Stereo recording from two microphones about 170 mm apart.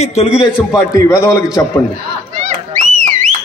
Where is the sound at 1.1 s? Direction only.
20° left (ahead or behind).